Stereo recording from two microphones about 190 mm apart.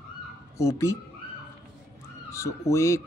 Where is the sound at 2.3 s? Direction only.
15° left (ahead or behind).